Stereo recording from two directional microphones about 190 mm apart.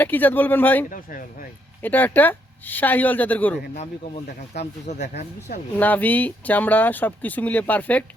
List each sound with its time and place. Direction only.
0.0 s speech: 10° left (ahead or behind)
0.9 s speech: 45° left (ahead or behind)
1.8 s speech: 10° left (ahead or behind)
4.9 s speech: 40° left (ahead or behind)
5.7 s speech: 10° left (ahead or behind)